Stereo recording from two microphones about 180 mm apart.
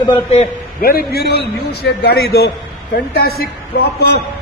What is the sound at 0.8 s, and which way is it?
A man's voice, 60° left (ahead or behind).